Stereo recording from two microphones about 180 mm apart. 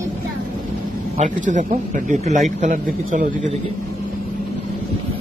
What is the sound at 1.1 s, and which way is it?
Speech, 45° right (ahead or behind).